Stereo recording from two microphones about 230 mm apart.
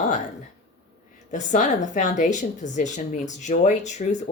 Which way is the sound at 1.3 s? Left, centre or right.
Left.